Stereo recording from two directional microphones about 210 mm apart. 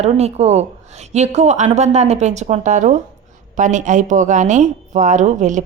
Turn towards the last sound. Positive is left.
turn(degrees=-35)  # may be behind; listen again after turning